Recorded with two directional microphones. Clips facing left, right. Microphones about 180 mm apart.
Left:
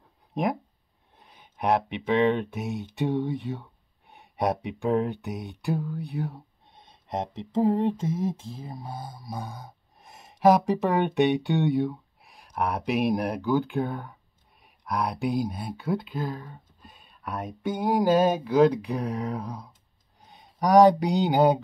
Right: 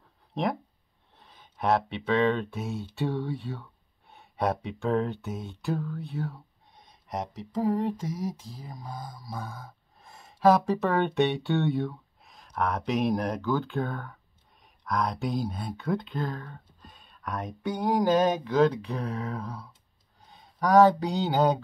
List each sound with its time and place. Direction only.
0.3 s speech: 15° left (ahead or behind)